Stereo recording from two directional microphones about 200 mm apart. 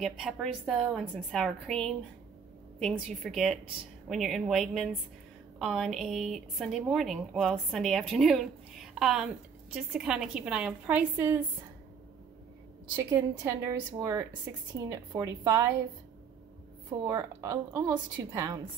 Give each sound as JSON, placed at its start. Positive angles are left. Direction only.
{"t": 0.0, "sound": "a woman's voice", "side_deg": 0}
{"t": 12.9, "sound": "a woman's voice", "side_deg": -20}
{"t": 17.0, "sound": "a woman's voice", "side_deg": -15}